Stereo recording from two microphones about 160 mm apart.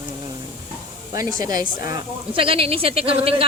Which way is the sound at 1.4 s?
25° right (ahead or behind).